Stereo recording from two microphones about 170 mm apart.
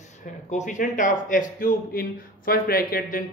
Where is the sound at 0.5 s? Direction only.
45° left (ahead or behind).